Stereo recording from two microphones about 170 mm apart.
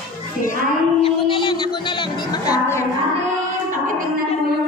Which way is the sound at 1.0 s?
30° left (ahead or behind).